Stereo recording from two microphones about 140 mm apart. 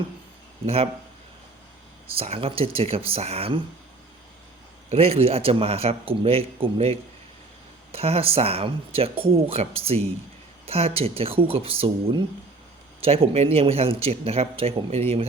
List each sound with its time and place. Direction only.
0.6 s speech: 45° right (ahead or behind)
2.1 s speech: 45° right (ahead or behind)
4.9 s speech: 45° right (ahead or behind)